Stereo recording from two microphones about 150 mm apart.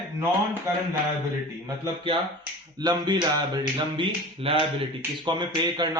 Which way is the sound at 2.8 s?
30° right (ahead or behind).